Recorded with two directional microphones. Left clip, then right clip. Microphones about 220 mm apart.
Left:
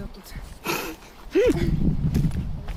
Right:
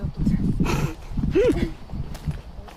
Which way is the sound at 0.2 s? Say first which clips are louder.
Right 17 dB; 20° left (ahead or behind).